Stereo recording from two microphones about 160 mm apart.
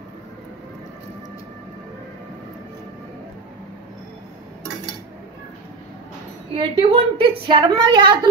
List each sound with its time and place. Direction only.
6.5 s a woman's voice: 35° right (ahead or behind)